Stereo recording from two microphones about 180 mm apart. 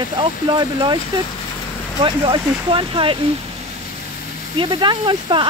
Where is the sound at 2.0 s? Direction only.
25° right (ahead or behind).